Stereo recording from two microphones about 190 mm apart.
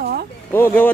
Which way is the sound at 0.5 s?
10° left (ahead or behind).